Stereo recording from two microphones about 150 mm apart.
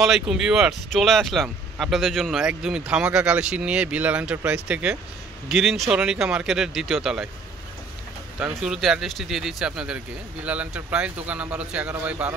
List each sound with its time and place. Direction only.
0.0 s speech: 5° right (ahead or behind)
8.4 s speech: 5° right (ahead or behind)